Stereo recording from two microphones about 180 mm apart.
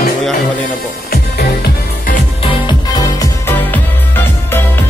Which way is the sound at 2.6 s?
20° left (ahead or behind).